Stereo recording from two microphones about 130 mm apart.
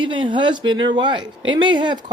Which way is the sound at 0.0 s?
40° right (ahead or behind).